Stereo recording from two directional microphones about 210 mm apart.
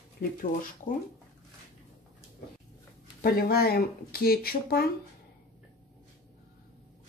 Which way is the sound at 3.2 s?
45° left (ahead or behind).